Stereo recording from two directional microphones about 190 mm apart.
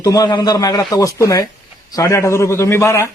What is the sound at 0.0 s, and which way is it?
A man's voice, 20° left (ahead or behind).